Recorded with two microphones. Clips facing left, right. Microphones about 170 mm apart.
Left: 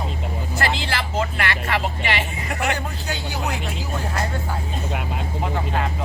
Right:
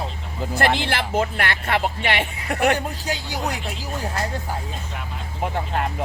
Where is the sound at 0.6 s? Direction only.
55° right (ahead or behind).